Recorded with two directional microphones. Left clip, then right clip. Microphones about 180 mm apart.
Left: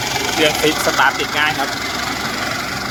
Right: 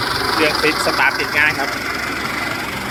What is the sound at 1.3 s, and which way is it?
Speech, 10° left (ahead or behind).